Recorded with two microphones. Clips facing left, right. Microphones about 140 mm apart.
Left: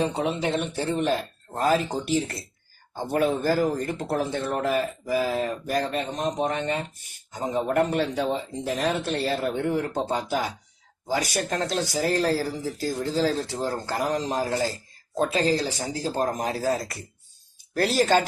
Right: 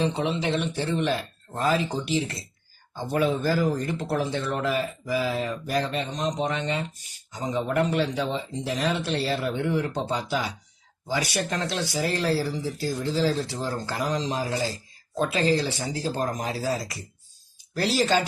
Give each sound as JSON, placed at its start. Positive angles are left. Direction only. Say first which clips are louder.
{"t": 0.0, "sound": "speech", "louder": "even", "side_deg": 45}